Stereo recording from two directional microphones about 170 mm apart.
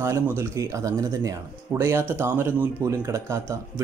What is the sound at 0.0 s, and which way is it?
Speech, 15° right (ahead or behind).